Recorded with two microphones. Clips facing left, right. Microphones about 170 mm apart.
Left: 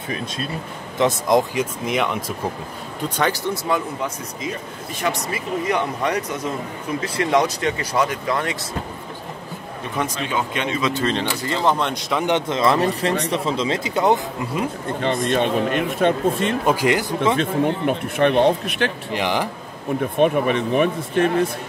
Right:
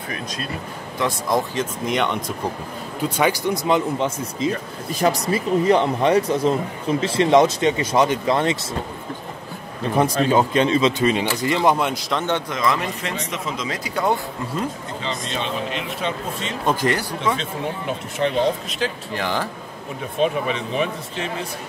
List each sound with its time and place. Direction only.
0.9 s speech: 20° left (ahead or behind); by 2.3 s 5° left (ahead or behind)
3.2 s speech: 10° right (ahead or behind)
4.9 s speech: 35° right (ahead or behind)
9.9 s a man's voice: 35° right (ahead or behind)
10.9 s speech: 15° right (ahead or behind)
12.2 s speech: 20° left (ahead or behind)
15.0 s speech: 55° left (ahead or behind)
16.6 s speech: 15° left (ahead or behind)
17.4 s speech: 60° left (ahead or behind)
19.1 s speech: 15° left (ahead or behind)
20.0 s speech: 55° left (ahead or behind)